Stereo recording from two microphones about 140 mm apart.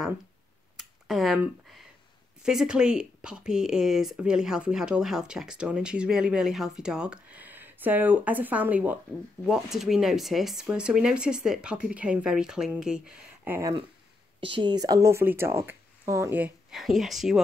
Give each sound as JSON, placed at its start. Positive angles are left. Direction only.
{"t": 0.7, "sound": "a sound", "side_deg": 0}
{"t": 2.4, "sound": "speech", "side_deg": -5}
{"t": 14.4, "sound": "speech", "side_deg": -35}
{"t": 16.7, "sound": "speech", "side_deg": 0}